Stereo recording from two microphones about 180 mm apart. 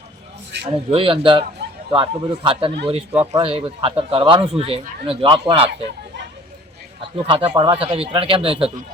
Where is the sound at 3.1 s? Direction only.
15° right (ahead or behind).